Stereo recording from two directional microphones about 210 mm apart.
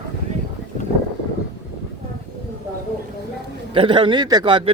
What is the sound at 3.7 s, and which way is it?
Speech, 25° right (ahead or behind).